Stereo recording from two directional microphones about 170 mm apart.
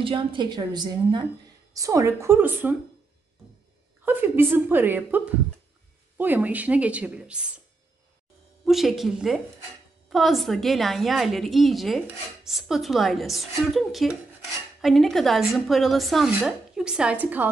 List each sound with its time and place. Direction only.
0.0 s a woman's voice: 30° right (ahead or behind); by 2.7 s 10° right (ahead or behind)
4.0 s a woman's voice: 10° right (ahead or behind)
8.6 s a woman's voice: centre (ahead or behind)